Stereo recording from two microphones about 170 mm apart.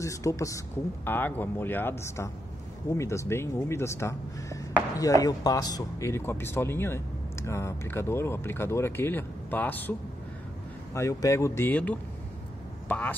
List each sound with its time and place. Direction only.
0.0 s speech: 20° left (ahead or behind)